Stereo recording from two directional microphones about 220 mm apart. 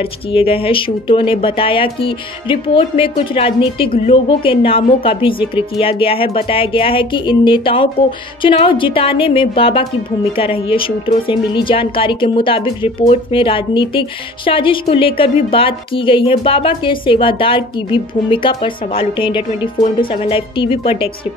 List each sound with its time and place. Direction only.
0.3 s a woman's voice: 25° left (ahead or behind)